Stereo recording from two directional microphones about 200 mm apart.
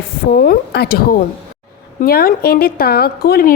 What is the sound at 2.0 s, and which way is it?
Speech, 50° left (ahead or behind).